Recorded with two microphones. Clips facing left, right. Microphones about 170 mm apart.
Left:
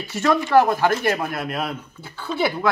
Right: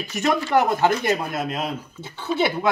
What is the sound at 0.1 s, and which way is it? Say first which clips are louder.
Speech: left 3 dB; 20° right (ahead or behind).